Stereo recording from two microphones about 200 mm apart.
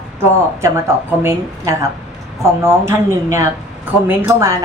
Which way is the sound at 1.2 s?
15° right (ahead or behind).